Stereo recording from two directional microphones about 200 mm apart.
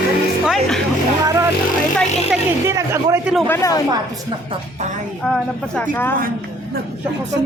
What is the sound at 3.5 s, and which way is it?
Speech, 15° left (ahead or behind).